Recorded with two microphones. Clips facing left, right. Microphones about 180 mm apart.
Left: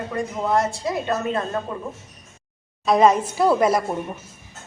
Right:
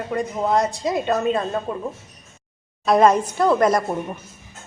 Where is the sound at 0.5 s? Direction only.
20° right (ahead or behind).